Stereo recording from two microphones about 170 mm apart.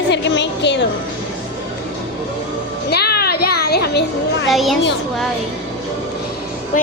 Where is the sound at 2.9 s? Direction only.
70° left (ahead or behind).